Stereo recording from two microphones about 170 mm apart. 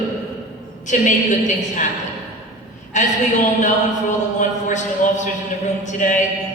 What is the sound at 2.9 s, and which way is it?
Speech, 45° left (ahead or behind).